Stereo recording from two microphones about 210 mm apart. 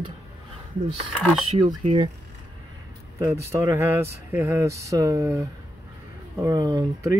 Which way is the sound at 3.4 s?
15° right (ahead or behind).